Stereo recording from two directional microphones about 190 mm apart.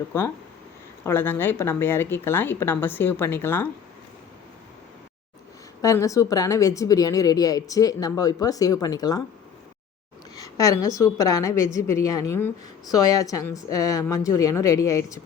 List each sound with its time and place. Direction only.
1.0 s a woman's voice: 10° left (ahead or behind)
5.8 s a woman's voice: 15° left (ahead or behind)
10.3 s a woman's voice: 20° left (ahead or behind)